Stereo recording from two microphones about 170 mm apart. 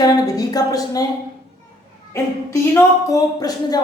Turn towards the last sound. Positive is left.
turn(degrees=20)  # may be behind; listen again after turning